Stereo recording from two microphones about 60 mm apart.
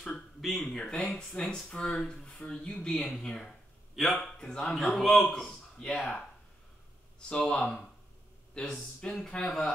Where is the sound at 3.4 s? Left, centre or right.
Centre.